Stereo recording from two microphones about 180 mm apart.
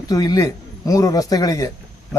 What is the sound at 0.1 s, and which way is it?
A man's voice, 20° left (ahead or behind).